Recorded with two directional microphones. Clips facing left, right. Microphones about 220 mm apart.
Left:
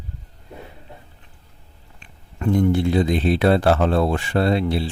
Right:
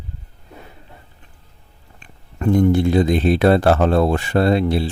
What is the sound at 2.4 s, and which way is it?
Speech, 45° right (ahead or behind).